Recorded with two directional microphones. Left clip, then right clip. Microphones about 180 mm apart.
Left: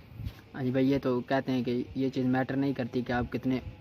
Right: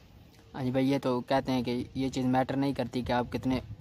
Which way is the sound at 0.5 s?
25° right (ahead or behind).